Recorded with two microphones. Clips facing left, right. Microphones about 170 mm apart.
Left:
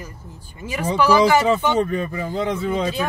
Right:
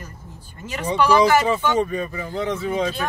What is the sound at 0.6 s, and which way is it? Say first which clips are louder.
Speech: left 1 dB; 10° left (ahead or behind).